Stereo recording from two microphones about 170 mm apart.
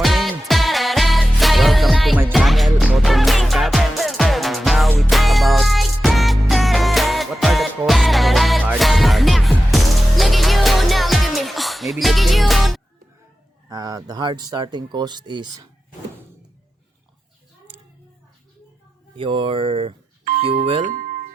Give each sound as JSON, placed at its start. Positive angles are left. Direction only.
{"t": 0.0, "sound": "music", "side_deg": 0}
{"t": 13.7, "sound": "speech", "side_deg": -20}
{"t": 19.1, "sound": "speech", "side_deg": -30}